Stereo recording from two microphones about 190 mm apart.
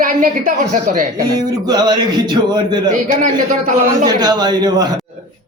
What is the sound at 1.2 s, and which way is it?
Speech, 20° right (ahead or behind).